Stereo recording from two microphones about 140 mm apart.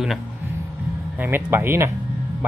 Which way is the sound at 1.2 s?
15° right (ahead or behind).